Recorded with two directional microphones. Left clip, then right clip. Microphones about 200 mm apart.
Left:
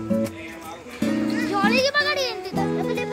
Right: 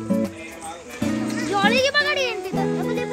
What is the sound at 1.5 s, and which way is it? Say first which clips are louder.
Music: right 2 dB; 45° right (ahead or behind).